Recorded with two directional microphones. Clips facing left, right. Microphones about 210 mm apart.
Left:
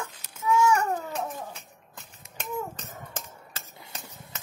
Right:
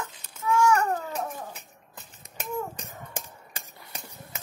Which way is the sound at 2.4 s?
10° right (ahead or behind).